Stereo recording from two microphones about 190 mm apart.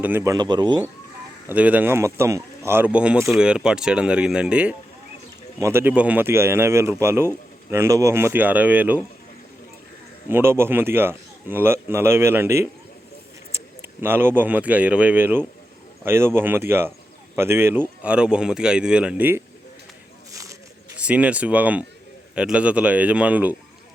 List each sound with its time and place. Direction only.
0.0 s speech: 15° right (ahead or behind)
1.5 s a man's voice: 10° right (ahead or behind)
10.2 s a man's voice: 10° right (ahead or behind)
20.3 s a sound: 15° right (ahead or behind)
20.9 s a man's voice: 5° right (ahead or behind)